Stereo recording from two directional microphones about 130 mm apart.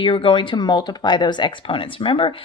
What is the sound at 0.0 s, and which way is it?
Speech, 40° left (ahead or behind).